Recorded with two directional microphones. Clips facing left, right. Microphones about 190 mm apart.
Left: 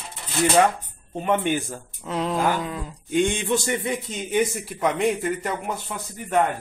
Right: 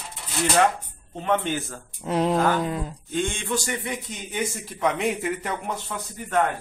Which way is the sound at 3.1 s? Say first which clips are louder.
Left 6 dB; 15° left (ahead or behind).